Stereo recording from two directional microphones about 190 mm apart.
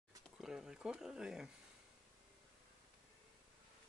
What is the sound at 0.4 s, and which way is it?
Speech, centre (ahead or behind).